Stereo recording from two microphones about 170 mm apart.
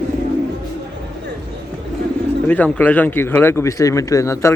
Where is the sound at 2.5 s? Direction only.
10° left (ahead or behind).